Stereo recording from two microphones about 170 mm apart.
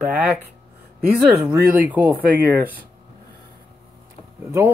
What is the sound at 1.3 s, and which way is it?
Speech, 15° right (ahead or behind).